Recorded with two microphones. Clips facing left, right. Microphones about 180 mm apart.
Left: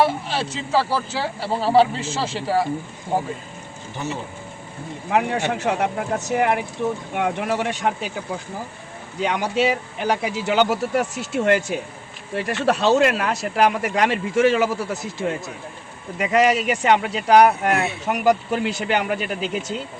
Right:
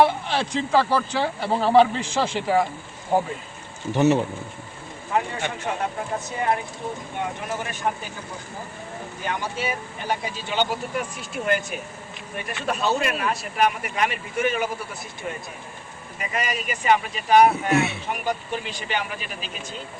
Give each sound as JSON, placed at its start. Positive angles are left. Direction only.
{"t": 0.1, "sound": "speech", "side_deg": 5}
{"t": 3.9, "sound": "speech", "side_deg": -70}
{"t": 5.1, "sound": "speech", "side_deg": 70}
{"t": 9.2, "sound": "speech", "side_deg": 75}